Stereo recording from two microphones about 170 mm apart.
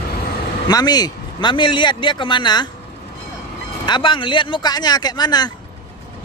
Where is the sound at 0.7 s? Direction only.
25° left (ahead or behind).